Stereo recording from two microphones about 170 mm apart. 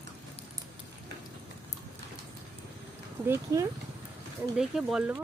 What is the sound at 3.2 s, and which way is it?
Speech, 15° right (ahead or behind).